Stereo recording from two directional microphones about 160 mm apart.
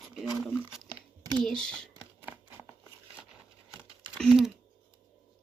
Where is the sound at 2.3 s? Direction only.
10° right (ahead or behind).